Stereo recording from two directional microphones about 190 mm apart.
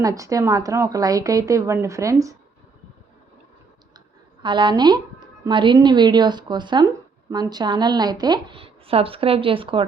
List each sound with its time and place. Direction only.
0.0 s speech: 15° right (ahead or behind)
4.4 s speech: 25° right (ahead or behind)